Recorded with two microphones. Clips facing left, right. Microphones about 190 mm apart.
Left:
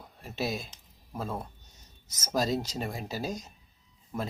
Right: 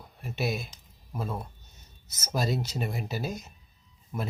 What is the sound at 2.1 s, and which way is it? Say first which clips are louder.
Speech: left 1 dB; 40° left (ahead or behind).